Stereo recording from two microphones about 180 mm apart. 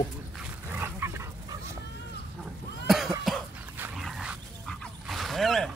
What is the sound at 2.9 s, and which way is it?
Cough, centre (ahead or behind).